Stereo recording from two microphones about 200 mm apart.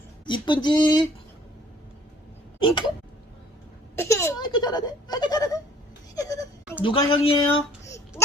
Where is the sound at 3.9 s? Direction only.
15° left (ahead or behind).